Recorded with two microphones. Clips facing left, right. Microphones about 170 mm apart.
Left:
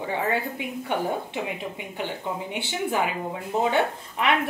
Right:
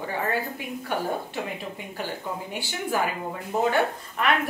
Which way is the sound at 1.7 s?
20° left (ahead or behind).